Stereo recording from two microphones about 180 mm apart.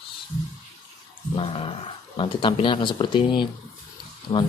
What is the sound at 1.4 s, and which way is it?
Speech, 30° left (ahead or behind).